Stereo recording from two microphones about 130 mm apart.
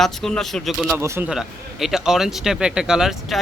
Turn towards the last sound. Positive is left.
turn(degrees=-5)  # may be behind; listen again after turning